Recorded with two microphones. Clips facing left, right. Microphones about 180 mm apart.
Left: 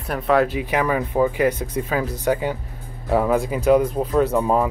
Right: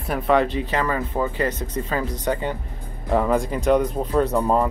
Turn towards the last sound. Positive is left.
turn(degrees=5)  # may be behind; listen again after turning